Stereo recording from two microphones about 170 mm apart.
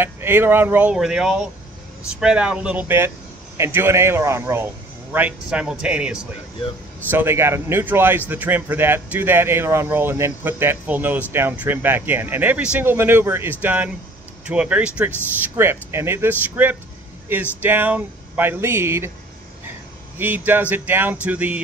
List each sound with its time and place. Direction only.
0.0 s speech: 15° right (ahead or behind)
20.2 s speech: 10° right (ahead or behind)